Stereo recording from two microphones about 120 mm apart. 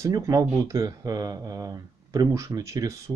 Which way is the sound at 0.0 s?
30° right (ahead or behind).